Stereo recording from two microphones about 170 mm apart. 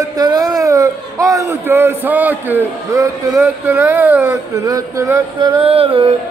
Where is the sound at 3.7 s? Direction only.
10° right (ahead or behind).